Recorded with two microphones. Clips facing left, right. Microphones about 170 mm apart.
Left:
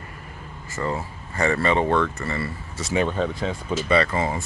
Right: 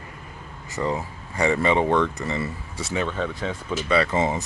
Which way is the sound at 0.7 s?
15° right (ahead or behind).